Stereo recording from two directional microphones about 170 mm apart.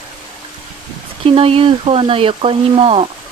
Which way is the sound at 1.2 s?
35° right (ahead or behind).